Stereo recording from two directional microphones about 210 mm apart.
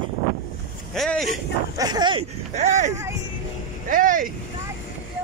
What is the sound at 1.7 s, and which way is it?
Speech, 20° right (ahead or behind).